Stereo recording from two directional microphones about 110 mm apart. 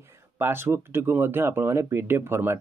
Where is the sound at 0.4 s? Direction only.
20° right (ahead or behind).